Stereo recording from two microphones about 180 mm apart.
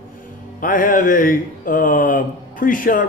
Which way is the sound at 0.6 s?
50° left (ahead or behind).